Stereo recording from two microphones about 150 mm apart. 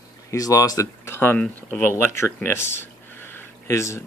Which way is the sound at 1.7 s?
15° left (ahead or behind).